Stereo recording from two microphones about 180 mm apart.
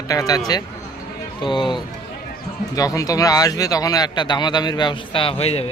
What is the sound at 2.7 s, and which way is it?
A man's voice, 20° left (ahead or behind).